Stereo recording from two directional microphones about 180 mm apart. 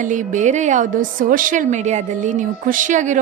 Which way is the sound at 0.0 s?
45° right (ahead or behind).